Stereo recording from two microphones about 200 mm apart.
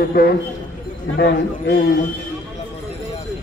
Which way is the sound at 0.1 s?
50° left (ahead or behind).